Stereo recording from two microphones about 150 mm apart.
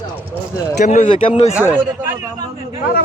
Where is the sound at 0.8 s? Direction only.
50° left (ahead or behind).